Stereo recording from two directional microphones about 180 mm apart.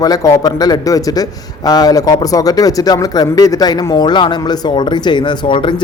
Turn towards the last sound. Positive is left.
turn(degrees=25)  # may be behind; listen again after turning